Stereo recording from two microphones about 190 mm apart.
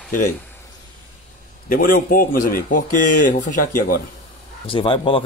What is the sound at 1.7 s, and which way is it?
Speech, 50° left (ahead or behind).